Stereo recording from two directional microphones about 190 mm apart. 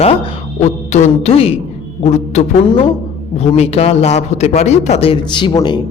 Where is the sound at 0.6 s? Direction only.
35° left (ahead or behind).